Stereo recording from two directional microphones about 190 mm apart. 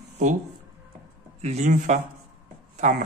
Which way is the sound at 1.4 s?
35° right (ahead or behind).